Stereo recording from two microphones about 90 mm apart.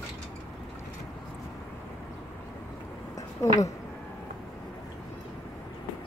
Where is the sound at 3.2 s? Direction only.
40° left (ahead or behind).